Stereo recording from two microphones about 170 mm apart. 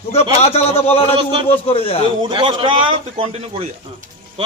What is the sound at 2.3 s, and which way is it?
Speech, 30° right (ahead or behind).